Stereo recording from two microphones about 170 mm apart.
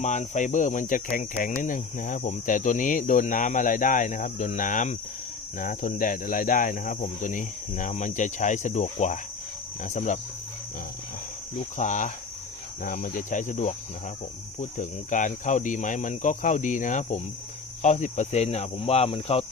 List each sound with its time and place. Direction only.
0.0 s cricket: 45° left (ahead or behind)
11.8 s cricket: 45° left (ahead or behind)